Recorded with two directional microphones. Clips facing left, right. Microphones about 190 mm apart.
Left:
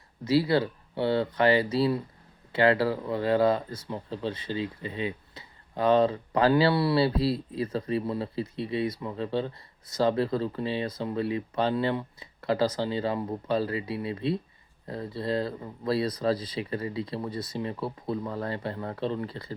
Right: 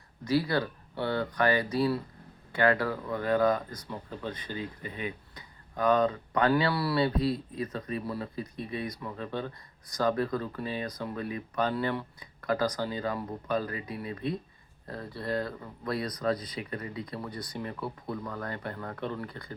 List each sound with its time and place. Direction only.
0.3 s speech: 25° left (ahead or behind)